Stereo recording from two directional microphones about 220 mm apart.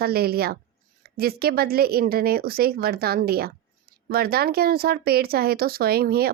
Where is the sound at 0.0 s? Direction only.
45° right (ahead or behind).